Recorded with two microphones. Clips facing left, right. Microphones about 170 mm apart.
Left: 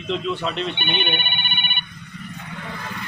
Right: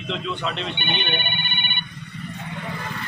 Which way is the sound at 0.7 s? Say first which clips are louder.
Left 1 dB; 15° left (ahead or behind).